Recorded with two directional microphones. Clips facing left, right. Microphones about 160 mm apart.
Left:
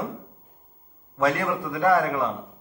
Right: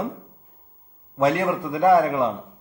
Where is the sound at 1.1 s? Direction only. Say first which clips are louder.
Right 3 dB; 20° right (ahead or behind).